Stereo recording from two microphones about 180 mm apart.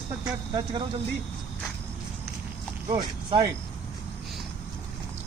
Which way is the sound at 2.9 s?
25° right (ahead or behind).